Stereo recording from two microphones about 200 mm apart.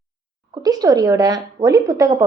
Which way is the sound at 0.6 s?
20° right (ahead or behind).